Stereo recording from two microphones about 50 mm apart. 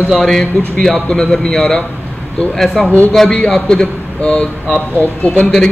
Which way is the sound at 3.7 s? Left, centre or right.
Centre.